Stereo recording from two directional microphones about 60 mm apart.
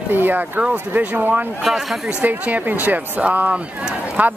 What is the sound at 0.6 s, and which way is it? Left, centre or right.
Speech, right.